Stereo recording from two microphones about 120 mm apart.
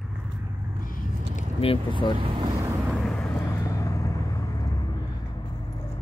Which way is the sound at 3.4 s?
30° left (ahead or behind).